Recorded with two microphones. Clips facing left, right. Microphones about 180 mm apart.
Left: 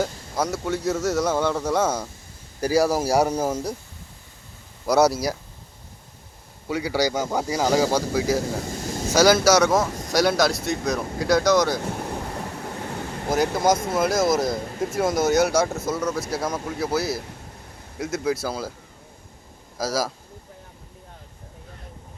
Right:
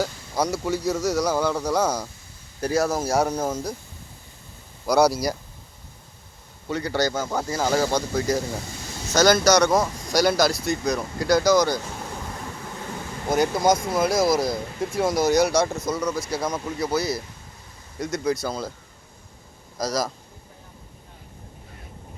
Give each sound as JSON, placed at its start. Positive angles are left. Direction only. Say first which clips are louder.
{"t": 0.0, "sound": "speech", "louder": "even", "side_deg": 0}
{"t": 4.9, "sound": "speech", "louder": "even", "side_deg": 5}
{"t": 6.7, "sound": "speech", "louder": "left 1 dB", "side_deg": 10}
{"t": 8.7, "sound": "a sound", "louder": "left 7 dB", "side_deg": 45}
{"t": 9.1, "sound": "speech", "louder": "left 1 dB", "side_deg": 5}
{"t": 13.3, "sound": "speech", "louder": "even", "side_deg": 0}
{"t": 19.8, "sound": "speech", "louder": "even", "side_deg": 5}